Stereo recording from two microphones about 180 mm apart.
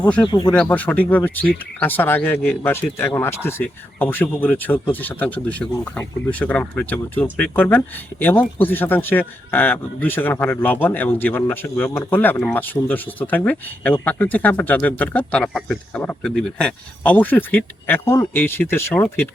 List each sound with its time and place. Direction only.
0.0 s speech: 5° left (ahead or behind)
0.3 s speech: 25° left (ahead or behind)
0.5 s speech: 5° left (ahead or behind)